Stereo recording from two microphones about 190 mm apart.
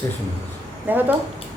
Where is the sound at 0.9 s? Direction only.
10° right (ahead or behind).